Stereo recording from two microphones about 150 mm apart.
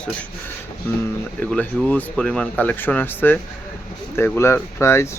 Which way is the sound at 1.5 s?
10° left (ahead or behind).